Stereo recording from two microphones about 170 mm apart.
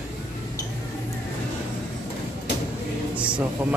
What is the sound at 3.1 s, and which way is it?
Music, 5° right (ahead or behind).